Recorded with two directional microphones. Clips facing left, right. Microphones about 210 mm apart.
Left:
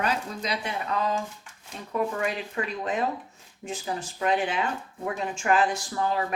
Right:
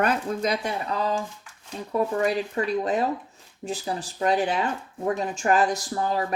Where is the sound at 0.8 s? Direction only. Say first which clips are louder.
Right 1 dB; 35° right (ahead or behind).